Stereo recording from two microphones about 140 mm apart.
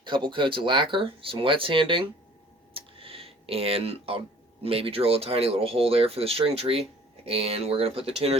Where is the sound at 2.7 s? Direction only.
40° right (ahead or behind).